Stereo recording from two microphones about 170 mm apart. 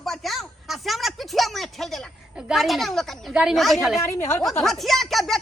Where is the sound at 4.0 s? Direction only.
15° left (ahead or behind).